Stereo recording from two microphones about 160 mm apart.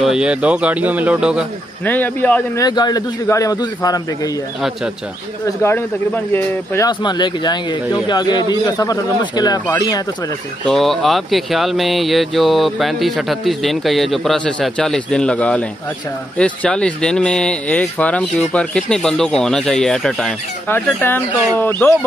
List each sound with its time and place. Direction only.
0.0 s speech: 5° right (ahead or behind)
1.9 s speech: 10° left (ahead or behind)
2.6 s speech: 25° left (ahead or behind)
5.6 s speech: 15° left (ahead or behind)
6.9 s speech: 30° left (ahead or behind)
10.7 s speech: centre (ahead or behind)
20.6 s speech: 15° left (ahead or behind)